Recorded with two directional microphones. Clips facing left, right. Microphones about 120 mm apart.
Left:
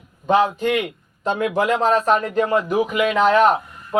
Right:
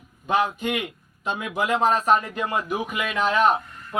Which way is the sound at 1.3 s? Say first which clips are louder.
Left 8 dB; 50° left (ahead or behind).